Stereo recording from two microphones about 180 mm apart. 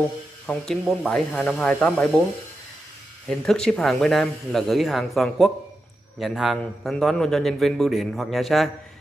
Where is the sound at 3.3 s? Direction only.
5° left (ahead or behind).